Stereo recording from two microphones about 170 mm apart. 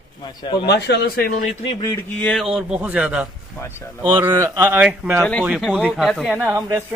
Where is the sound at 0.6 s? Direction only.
75° left (ahead or behind); by 1.4 s 60° left (ahead or behind).